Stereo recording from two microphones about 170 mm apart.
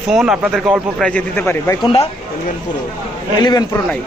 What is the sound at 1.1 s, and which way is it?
Speech, 10° left (ahead or behind).